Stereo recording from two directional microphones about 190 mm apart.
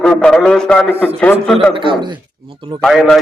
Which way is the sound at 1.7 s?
25° right (ahead or behind).